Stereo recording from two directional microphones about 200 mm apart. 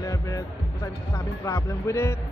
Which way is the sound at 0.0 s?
15° left (ahead or behind).